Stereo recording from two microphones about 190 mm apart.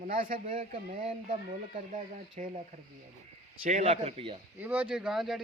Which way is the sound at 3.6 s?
40° right (ahead or behind).